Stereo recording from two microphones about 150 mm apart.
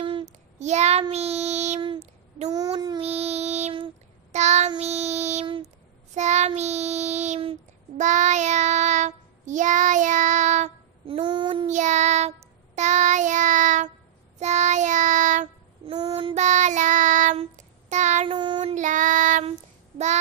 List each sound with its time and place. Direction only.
0.2 s child singing: 50° right (ahead or behind)
2.5 s child singing: 25° right (ahead or behind)
3.0 s child singing: 45° right (ahead or behind)
11.1 s child singing: 35° right (ahead or behind)
11.7 s child singing: 50° right (ahead or behind)
15.9 s child singing: 35° right (ahead or behind)
16.4 s child singing: 50° right (ahead or behind)
18.3 s child singing: 30° right (ahead or behind)
18.6 s child singing: 50° right (ahead or behind)